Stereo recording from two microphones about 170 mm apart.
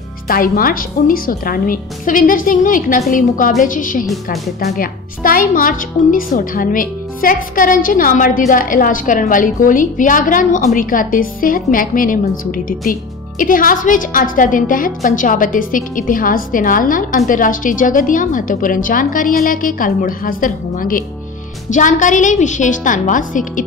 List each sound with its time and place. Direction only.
0.3 s a woman's voice: 60° left (ahead or behind)
4.0 s a woman's voice: centre (ahead or behind)
4.7 s a woman's voice: 55° left (ahead or behind)